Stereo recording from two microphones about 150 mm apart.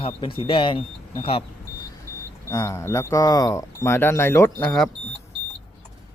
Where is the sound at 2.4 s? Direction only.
20° left (ahead or behind).